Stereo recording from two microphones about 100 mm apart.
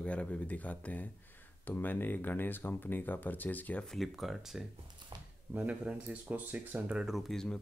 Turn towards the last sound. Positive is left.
turn(degrees=5)  # may be behind; listen again after turning